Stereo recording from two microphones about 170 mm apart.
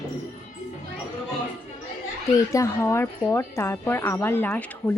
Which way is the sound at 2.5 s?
15° left (ahead or behind).